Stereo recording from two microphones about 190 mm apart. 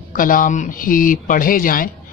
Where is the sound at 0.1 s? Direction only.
45° left (ahead or behind).